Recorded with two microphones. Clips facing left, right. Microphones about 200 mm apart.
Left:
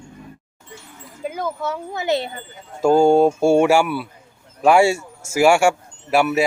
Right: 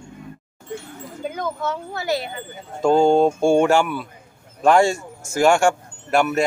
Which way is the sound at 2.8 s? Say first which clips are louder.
Left 2 dB; 10° left (ahead or behind).